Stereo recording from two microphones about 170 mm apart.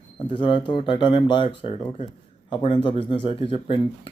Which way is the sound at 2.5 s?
30° left (ahead or behind).